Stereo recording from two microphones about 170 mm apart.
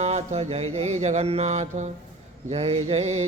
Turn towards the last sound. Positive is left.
turn(degrees=-40)  # may be behind; listen again after turning